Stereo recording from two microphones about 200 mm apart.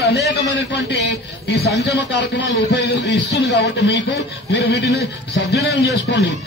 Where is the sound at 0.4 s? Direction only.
60° left (ahead or behind).